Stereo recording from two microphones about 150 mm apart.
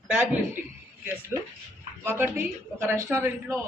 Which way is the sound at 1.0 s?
15° right (ahead or behind).